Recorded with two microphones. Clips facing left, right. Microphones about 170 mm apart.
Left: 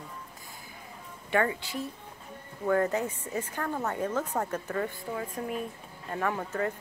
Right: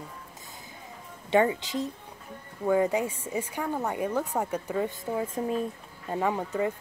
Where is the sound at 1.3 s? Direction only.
20° right (ahead or behind).